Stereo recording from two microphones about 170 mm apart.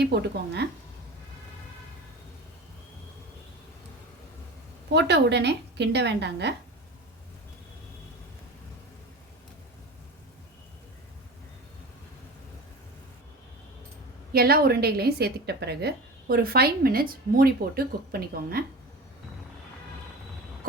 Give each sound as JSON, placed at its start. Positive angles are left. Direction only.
{"t": 0.0, "sound": "a woman's voice", "side_deg": -80}
{"t": 4.9, "sound": "a woman's voice", "side_deg": -80}
{"t": 14.3, "sound": "a woman's voice", "side_deg": -65}